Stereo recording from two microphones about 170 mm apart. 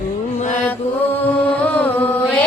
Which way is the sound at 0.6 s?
10° left (ahead or behind).